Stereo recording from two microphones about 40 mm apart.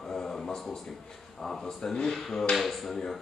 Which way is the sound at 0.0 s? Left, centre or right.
Centre.